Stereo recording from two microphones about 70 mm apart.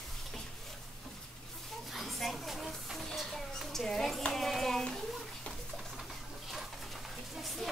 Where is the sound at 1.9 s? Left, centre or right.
Centre.